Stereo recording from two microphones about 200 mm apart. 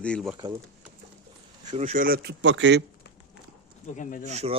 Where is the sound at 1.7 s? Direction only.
35° right (ahead or behind); by 2.8 s 65° right (ahead or behind).